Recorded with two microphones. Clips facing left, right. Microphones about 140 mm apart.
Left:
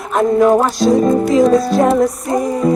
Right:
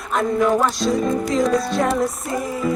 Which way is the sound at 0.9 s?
45° left (ahead or behind).